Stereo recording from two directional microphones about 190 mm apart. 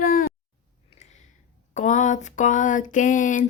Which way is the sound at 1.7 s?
40° left (ahead or behind).